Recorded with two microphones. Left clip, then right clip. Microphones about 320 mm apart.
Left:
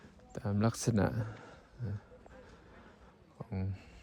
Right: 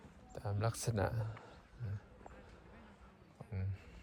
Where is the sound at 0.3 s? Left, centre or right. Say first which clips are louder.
Left 6 dB; left.